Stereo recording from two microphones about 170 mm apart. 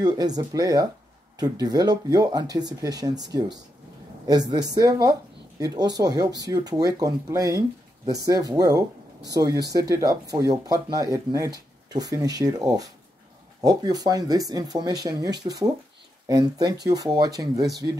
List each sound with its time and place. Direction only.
0.0 s speech: 25° right (ahead or behind)